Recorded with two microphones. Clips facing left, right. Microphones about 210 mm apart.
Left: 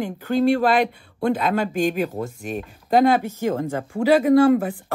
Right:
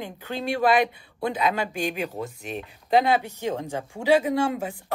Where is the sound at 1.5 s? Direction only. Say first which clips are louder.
Left 6 dB; 45° left (ahead or behind).